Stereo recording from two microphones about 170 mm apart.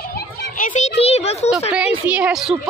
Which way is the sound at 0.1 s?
50° left (ahead or behind).